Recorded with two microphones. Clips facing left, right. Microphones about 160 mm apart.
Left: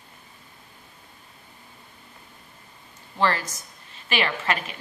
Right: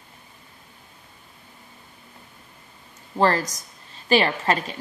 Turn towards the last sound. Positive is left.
turn(degrees=-35)  # may be behind; listen again after turning